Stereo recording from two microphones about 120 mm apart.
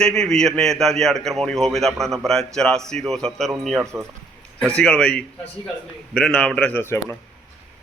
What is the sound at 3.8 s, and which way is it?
Speech, 20° right (ahead or behind).